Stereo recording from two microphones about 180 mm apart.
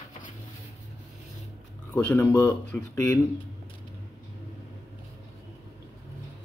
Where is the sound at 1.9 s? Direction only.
5° left (ahead or behind).